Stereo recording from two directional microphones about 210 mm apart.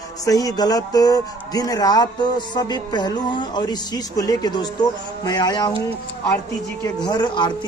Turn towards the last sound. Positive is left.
turn(degrees=20)  # may be behind; listen again after turning